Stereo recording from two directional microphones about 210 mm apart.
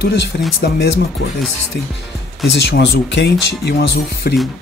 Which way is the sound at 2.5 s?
55° left (ahead or behind).